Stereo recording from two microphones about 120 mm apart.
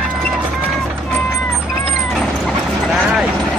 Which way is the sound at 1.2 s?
20° left (ahead or behind).